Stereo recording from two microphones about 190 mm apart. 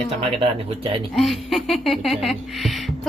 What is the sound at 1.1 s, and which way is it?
Speech, centre (ahead or behind).